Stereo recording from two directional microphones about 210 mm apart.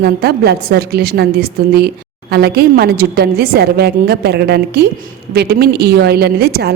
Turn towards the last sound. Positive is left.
turn(degrees=-45)  # may be behind; listen again after turning